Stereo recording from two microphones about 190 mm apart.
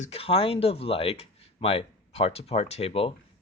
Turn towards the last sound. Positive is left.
turn(degrees=30)  # may be behind; listen again after turning